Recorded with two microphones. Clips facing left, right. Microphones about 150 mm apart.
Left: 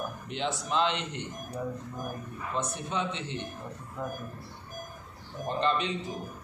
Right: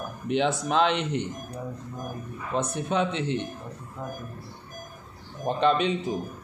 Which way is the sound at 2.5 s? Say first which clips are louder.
Right 6 dB; 70° right (ahead or behind).